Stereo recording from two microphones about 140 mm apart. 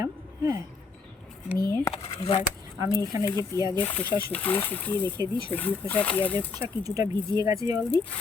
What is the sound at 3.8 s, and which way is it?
Speech, 10° left (ahead or behind).